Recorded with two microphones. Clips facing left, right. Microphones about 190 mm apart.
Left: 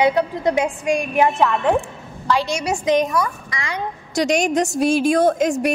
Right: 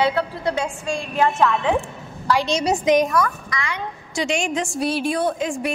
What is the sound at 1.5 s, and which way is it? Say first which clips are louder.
Speech: left 2 dB; centre (ahead or behind).